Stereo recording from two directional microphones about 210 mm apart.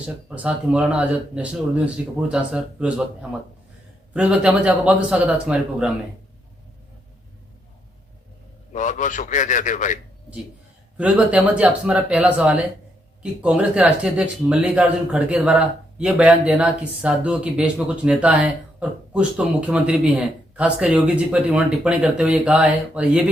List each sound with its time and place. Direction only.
0.3 s speech: 5° right (ahead or behind)
8.7 s a man's voice: 35° left (ahead or behind)
10.9 s speech: 5° right (ahead or behind)